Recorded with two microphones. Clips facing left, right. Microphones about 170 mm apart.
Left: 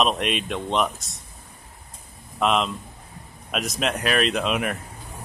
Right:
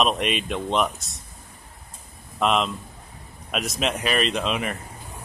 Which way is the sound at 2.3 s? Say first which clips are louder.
Even; centre (ahead or behind).